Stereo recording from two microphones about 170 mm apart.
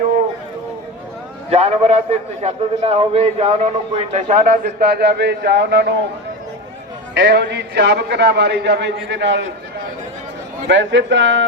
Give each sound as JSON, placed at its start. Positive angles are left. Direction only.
{"t": 1.5, "sound": "a man's voice", "side_deg": -40}
{"t": 7.1, "sound": "a man's voice", "side_deg": -85}
{"t": 10.7, "sound": "a man's voice", "side_deg": -90}